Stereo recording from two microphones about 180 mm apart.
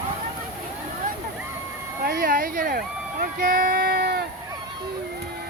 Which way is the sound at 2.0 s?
55° right (ahead or behind).